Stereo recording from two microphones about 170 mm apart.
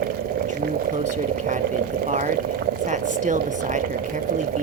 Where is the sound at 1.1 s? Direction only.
45° right (ahead or behind).